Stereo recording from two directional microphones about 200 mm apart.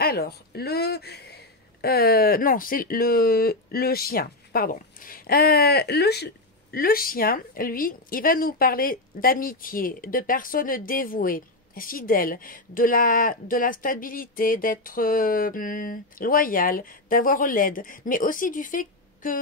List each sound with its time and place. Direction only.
0.0 s a woman's voice: 50° left (ahead or behind)